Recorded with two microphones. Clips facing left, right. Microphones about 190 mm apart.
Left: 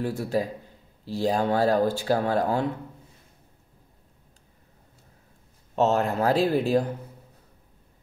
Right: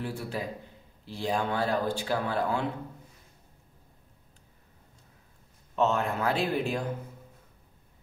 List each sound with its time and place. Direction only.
0.0 s speech: 40° left (ahead or behind)
5.8 s speech: 40° left (ahead or behind)